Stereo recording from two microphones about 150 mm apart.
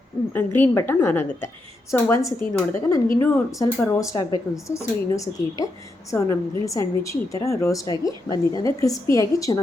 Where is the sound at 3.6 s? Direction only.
20° left (ahead or behind).